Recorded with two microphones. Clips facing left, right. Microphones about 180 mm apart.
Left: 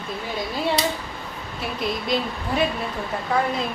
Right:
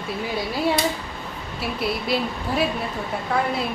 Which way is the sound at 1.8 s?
5° right (ahead or behind).